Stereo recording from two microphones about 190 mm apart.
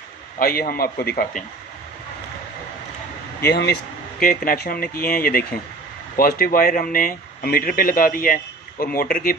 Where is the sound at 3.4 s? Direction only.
60° left (ahead or behind).